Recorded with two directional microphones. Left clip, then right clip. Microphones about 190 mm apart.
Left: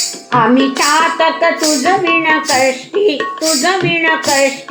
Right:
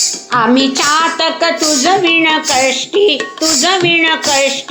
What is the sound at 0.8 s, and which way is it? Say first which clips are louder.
Music: left 1 dB; 45° right (ahead or behind).